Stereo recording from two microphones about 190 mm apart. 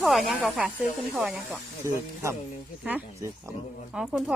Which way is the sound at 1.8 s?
15° right (ahead or behind).